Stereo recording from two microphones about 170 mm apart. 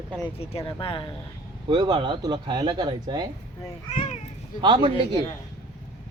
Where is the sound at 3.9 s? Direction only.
50° left (ahead or behind).